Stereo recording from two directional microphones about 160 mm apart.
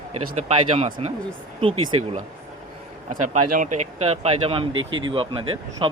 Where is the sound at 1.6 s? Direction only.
40° right (ahead or behind).